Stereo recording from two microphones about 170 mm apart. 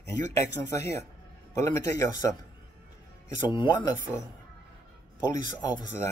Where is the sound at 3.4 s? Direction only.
25° left (ahead or behind).